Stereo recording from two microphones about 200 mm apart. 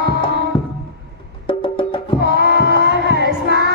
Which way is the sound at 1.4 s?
25° left (ahead or behind).